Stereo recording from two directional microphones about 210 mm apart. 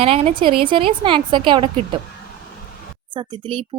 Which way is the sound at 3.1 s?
20° right (ahead or behind).